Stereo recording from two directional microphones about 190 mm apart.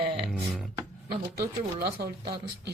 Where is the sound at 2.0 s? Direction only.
60° right (ahead or behind).